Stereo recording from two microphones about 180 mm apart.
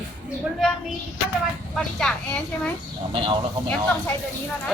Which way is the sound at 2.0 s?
5° left (ahead or behind).